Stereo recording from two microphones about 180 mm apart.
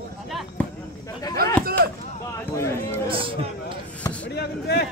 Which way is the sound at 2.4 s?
15° left (ahead or behind).